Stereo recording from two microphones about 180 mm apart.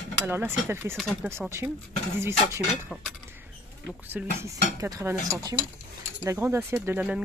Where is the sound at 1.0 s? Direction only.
Centre (ahead or behind).